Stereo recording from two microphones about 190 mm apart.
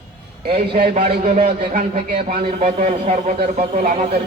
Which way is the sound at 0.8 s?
30° right (ahead or behind).